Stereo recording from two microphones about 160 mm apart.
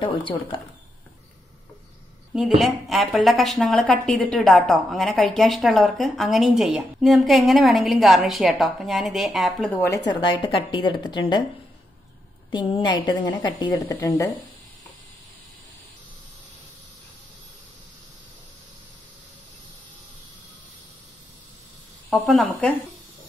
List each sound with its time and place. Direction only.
0.0 s speech: 30° left (ahead or behind)
2.3 s a woman's voice: centre (ahead or behind)
9.7 s a woman's voice: 20° left (ahead or behind)
12.4 s a woman's voice: 30° left (ahead or behind)
22.1 s a woman's voice: centre (ahead or behind)